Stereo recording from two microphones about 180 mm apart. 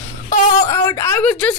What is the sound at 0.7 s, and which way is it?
Speech, 15° left (ahead or behind).